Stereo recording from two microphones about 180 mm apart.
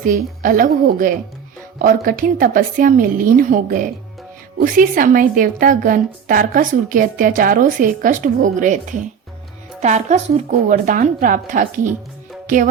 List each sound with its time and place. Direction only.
0.0 s a woman's voice: 50° right (ahead or behind)